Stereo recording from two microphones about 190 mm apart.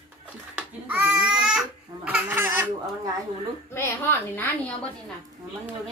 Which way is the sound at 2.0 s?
10° right (ahead or behind).